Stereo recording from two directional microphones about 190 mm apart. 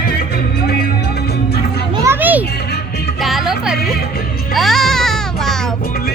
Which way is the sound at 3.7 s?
55° left (ahead or behind).